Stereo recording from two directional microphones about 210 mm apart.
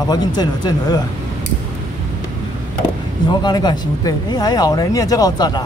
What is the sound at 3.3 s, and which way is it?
Speech, 20° left (ahead or behind).